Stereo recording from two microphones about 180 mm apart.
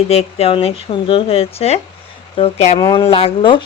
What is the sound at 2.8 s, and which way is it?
Speech, 25° left (ahead or behind).